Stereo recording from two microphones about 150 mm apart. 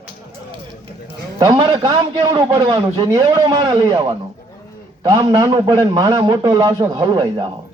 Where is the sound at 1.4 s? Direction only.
25° right (ahead or behind).